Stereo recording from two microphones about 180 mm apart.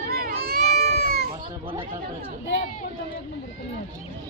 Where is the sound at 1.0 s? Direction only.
60° right (ahead or behind).